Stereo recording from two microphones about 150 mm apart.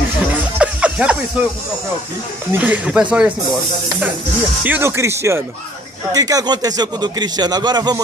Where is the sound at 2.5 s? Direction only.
10° right (ahead or behind).